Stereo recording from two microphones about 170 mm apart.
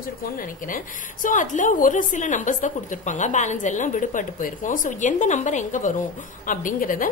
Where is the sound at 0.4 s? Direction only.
55° left (ahead or behind).